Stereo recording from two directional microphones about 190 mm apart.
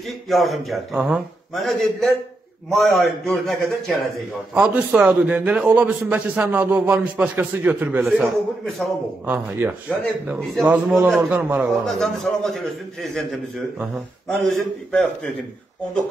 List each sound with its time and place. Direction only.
0.3 s a man's voice: centre (ahead or behind)
14.4 s a man's voice: 5° left (ahead or behind)